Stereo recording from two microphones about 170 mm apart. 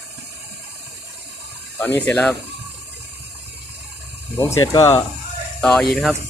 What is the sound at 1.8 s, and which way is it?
Speech, 10° left (ahead or behind).